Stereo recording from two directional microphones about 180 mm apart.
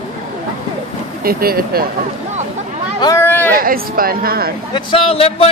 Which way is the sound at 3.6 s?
55° right (ahead or behind).